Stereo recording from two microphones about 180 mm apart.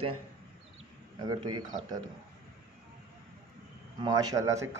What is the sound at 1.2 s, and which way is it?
Speech, 20° right (ahead or behind).